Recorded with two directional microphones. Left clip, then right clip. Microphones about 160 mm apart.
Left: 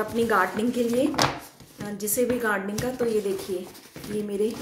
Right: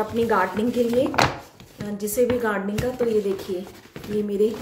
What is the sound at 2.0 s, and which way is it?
Speech, 15° right (ahead or behind).